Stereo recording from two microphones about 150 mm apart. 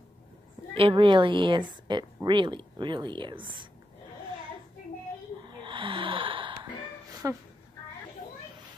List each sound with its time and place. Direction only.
0.7 s speech: 35° right (ahead or behind)
5.4 s gasp: 35° right (ahead or behind)
7.2 s a woman's voice: 20° right (ahead or behind)